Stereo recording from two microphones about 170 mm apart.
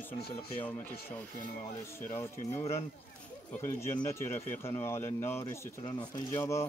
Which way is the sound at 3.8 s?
15° left (ahead or behind).